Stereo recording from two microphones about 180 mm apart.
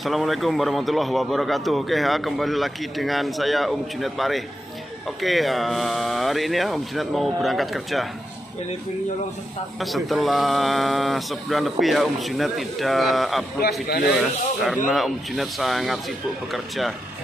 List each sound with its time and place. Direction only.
0.0 s a man's voice: centre (ahead or behind)
9.8 s a man's voice: centre (ahead or behind)
13.8 s speech: 60° left (ahead or behind)
14.1 s a man's voice: centre (ahead or behind)